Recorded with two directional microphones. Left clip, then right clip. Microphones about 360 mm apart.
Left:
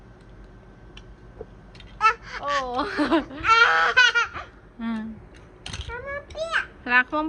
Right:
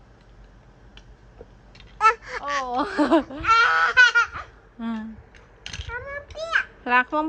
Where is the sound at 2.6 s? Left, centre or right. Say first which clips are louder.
Right 2 dB; centre.